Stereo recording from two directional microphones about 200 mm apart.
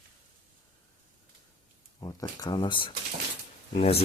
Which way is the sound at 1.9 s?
20° left (ahead or behind).